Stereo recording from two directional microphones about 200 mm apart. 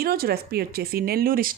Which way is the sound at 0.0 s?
50° right (ahead or behind).